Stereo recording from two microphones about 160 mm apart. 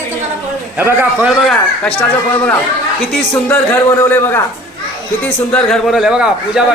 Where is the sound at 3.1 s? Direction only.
10° left (ahead or behind).